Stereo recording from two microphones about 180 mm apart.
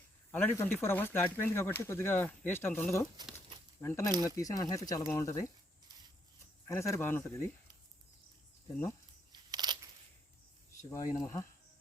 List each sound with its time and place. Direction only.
0.3 s speech: 10° left (ahead or behind)
6.7 s speech: 15° left (ahead or behind)
9.3 s crushing: 25° right (ahead or behind)
10.8 s speech: 15° left (ahead or behind)